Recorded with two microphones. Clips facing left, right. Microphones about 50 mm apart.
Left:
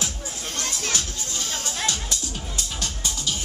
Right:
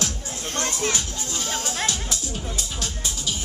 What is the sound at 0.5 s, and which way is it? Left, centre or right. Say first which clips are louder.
Music: right 4 dB; right.